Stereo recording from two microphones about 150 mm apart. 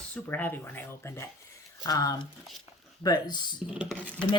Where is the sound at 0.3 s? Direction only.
15° left (ahead or behind).